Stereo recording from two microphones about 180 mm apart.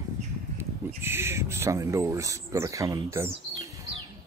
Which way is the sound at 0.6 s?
15° right (ahead or behind).